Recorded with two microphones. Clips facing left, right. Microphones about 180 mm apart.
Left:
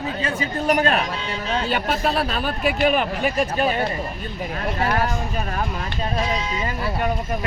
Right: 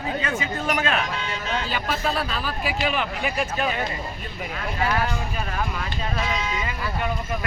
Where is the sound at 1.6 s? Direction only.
55° left (ahead or behind); by 7.4 s 40° left (ahead or behind).